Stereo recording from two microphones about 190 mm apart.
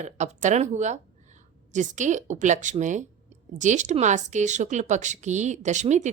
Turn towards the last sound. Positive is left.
turn(degrees=-40)  # may be behind; listen again after turning